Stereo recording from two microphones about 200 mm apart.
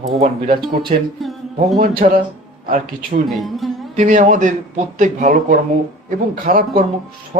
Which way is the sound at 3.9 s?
40° right (ahead or behind).